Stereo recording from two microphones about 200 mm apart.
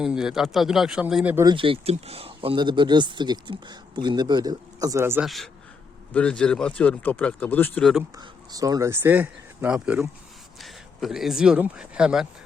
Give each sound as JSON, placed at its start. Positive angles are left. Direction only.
{"t": 0.0, "sound": "speech", "side_deg": -5}
{"t": 1.5, "sound": "speech", "side_deg": -25}
{"t": 5.2, "sound": "speech", "side_deg": 0}
{"t": 8.2, "sound": "speech", "side_deg": -20}